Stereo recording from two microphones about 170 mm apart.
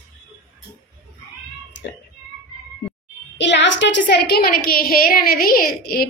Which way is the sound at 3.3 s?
90° left.